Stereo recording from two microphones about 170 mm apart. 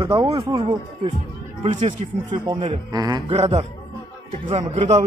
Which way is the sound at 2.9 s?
20° right (ahead or behind).